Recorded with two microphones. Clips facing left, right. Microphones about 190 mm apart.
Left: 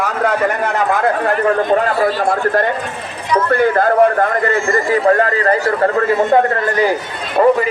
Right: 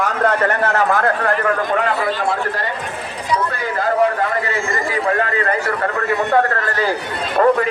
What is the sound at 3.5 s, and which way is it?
A man's voice, 60° left (ahead or behind).